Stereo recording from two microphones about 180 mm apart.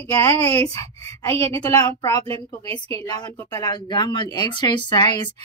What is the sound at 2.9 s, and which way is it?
A woman's voice, 20° left (ahead or behind).